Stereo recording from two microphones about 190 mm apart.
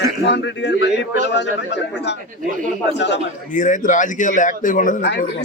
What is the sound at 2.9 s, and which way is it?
Speech, 65° left (ahead or behind).